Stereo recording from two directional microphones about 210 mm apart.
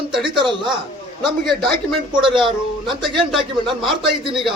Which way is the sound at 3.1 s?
Centre (ahead or behind).